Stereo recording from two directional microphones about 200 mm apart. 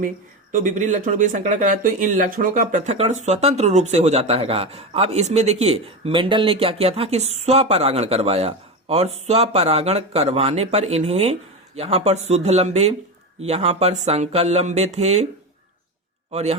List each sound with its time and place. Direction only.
0.5 s speech: 40° right (ahead or behind)
16.3 s speech: 35° right (ahead or behind)